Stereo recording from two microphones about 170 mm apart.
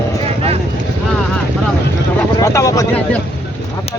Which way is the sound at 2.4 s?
20° left (ahead or behind).